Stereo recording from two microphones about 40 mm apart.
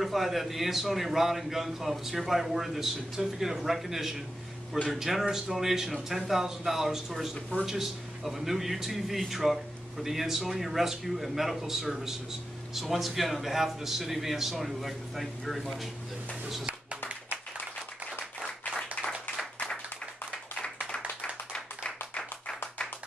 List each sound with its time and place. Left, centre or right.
0.0 s a man's voice: centre
21.8 s clapping: left